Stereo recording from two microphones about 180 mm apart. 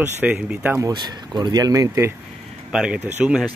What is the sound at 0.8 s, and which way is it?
Speech, 25° right (ahead or behind).